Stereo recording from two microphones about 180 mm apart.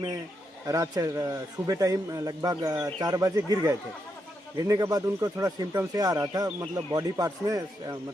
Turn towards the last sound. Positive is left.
turn(degrees=-20)  # may be behind; listen again after turning